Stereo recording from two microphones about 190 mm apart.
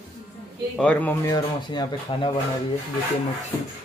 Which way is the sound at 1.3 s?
20° left (ahead or behind).